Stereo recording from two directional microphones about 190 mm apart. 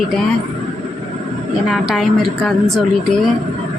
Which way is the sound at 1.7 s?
Centre (ahead or behind).